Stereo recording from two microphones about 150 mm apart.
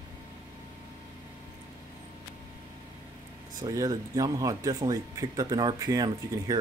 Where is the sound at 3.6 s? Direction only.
25° right (ahead or behind).